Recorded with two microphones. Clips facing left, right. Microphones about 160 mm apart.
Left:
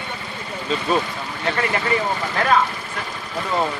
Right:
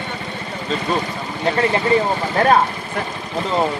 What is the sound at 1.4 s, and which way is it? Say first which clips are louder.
Speech: right 5 dB; 30° right (ahead or behind).